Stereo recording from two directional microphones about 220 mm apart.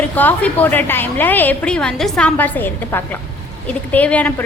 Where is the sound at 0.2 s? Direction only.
10° left (ahead or behind).